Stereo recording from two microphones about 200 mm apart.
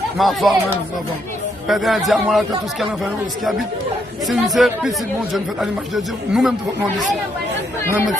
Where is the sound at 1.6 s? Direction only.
Centre (ahead or behind).